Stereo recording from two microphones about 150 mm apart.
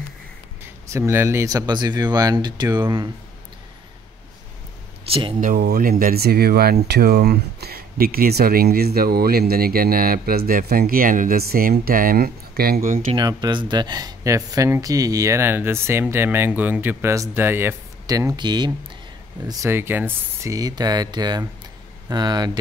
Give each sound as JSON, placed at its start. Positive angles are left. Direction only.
{"t": 0.8, "sound": "speech", "side_deg": -20}
{"t": 5.1, "sound": "speech", "side_deg": -40}
{"t": 5.4, "sound": "speech", "side_deg": -80}
{"t": 13.1, "sound": "speech", "side_deg": -30}
{"t": 19.4, "sound": "speech", "side_deg": -20}